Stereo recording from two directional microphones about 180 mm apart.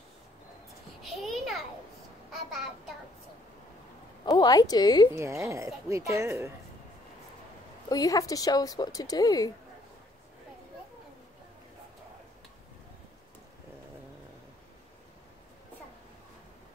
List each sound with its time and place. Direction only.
1.0 s a sound: centre (ahead or behind)
4.2 s speech: 20° left (ahead or behind)
5.1 s speech: 15° right (ahead or behind)
7.9 s speech: 20° left (ahead or behind)